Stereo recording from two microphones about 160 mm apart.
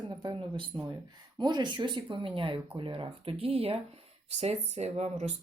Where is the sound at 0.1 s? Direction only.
30° right (ahead or behind).